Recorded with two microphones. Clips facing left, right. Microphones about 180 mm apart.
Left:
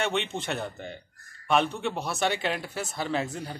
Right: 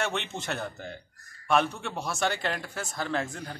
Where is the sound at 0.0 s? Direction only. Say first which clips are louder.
Left 3 dB; centre (ahead or behind).